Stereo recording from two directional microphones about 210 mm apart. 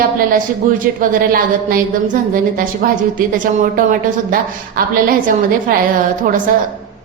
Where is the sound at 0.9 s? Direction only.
45° right (ahead or behind).